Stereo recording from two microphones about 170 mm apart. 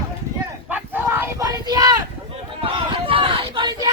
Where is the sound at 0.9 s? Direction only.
15° right (ahead or behind).